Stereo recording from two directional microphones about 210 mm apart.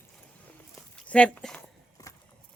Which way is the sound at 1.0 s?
5° left (ahead or behind).